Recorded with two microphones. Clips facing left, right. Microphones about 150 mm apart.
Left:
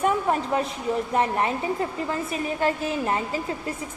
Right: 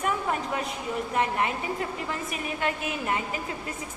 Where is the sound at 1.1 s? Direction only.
35° left (ahead or behind).